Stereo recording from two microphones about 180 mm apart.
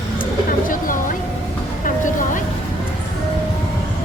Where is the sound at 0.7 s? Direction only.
50° left (ahead or behind).